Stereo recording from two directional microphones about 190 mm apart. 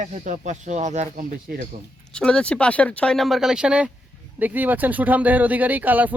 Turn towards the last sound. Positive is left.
turn(degrees=-10)  # may be behind; listen again after turning